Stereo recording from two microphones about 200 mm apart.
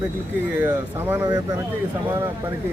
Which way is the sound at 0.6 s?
10° right (ahead or behind).